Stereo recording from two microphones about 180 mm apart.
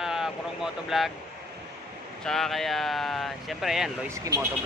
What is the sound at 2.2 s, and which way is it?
Speech, centre (ahead or behind).